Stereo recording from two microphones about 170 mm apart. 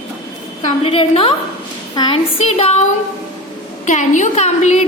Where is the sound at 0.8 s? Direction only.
35° left (ahead or behind).